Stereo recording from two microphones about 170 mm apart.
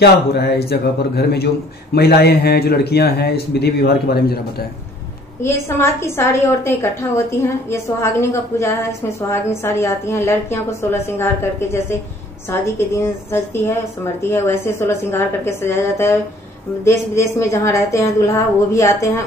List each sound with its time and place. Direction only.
0.0 s speech: 75° left (ahead or behind)
5.4 s a woman's voice: 15° left (ahead or behind)
12.4 s a woman's voice: 15° left (ahead or behind)